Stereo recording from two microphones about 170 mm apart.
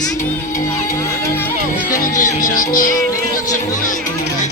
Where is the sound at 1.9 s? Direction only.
50° left (ahead or behind).